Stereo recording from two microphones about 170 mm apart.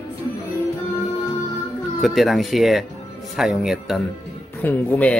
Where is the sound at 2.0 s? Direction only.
Centre (ahead or behind).